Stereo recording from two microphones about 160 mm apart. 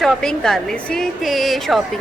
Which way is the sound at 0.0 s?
Centre (ahead or behind).